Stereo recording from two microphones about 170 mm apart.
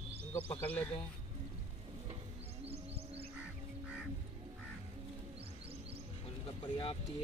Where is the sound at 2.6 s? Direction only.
35° right (ahead or behind).